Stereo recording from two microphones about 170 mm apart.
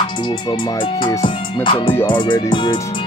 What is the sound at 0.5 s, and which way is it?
Speech, 30° left (ahead or behind).